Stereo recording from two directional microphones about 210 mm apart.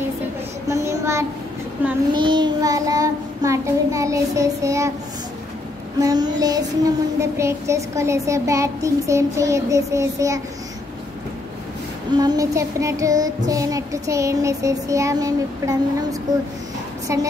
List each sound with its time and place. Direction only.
0.7 s child singing: 15° right (ahead or behind)
2.1 s child singing: 20° right (ahead or behind)
5.9 s child singing: 20° right (ahead or behind)
12.2 s child singing: 15° right (ahead or behind)